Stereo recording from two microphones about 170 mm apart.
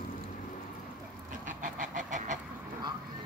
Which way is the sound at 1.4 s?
50° right (ahead or behind).